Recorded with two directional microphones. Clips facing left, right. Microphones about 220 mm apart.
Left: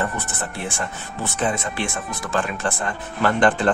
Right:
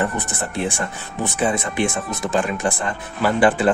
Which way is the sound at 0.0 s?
15° right (ahead or behind).